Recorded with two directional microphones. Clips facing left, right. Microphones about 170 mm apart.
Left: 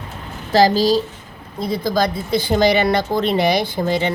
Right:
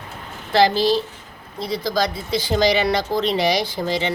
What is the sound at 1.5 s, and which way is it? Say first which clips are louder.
A woman's voice: left 3 dB; 50° left (ahead or behind).